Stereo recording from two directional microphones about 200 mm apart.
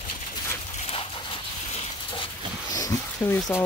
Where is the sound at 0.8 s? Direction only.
30° left (ahead or behind).